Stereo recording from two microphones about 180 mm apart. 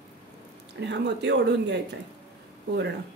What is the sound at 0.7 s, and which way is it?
Speech, 75° right (ahead or behind).